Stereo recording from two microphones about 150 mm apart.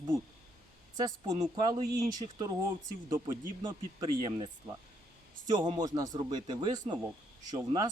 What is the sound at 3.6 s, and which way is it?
Speech, 30° right (ahead or behind).